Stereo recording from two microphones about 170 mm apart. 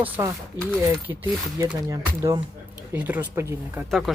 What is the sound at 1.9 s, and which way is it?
Speech, 20° right (ahead or behind).